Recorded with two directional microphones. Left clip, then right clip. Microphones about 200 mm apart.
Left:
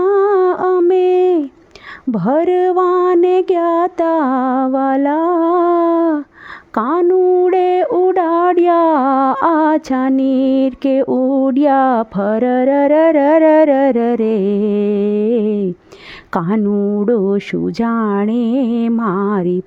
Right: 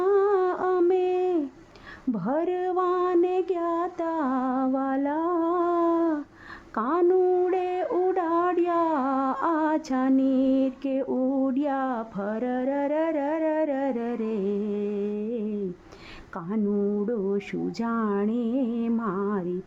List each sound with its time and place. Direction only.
0.0 s a sound: 35° left (ahead or behind)
6.7 s speech: 35° left (ahead or behind)
16.7 s mantra: 35° left (ahead or behind)